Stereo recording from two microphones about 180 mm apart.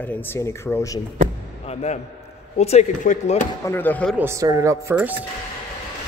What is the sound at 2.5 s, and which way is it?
Speech, 35° left (ahead or behind).